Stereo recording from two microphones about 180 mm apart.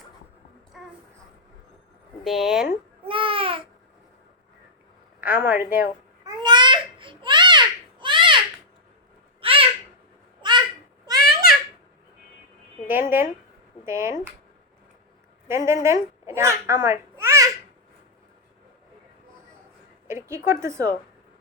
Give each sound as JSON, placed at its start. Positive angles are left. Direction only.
{"t": 0.7, "sound": "music", "side_deg": 0}
{"t": 2.2, "sound": "speech", "side_deg": 0}
{"t": 3.0, "sound": "babbling", "side_deg": -30}
{"t": 5.2, "sound": "a woman's voice", "side_deg": -10}
{"t": 6.2, "sound": "babbling", "side_deg": -25}
{"t": 9.4, "sound": "owl", "side_deg": -30}
{"t": 11.0, "sound": "a sound", "side_deg": -20}
{"t": 12.9, "sound": "a woman's voice", "side_deg": -10}
{"t": 15.4, "sound": "a child's voice", "side_deg": -15}
{"t": 20.1, "sound": "a woman's voice", "side_deg": -15}